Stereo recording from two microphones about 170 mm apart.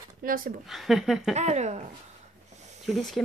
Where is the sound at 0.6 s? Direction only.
Centre (ahead or behind).